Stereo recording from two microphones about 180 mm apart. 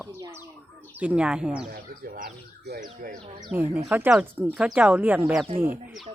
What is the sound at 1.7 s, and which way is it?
Speech, 55° right (ahead or behind).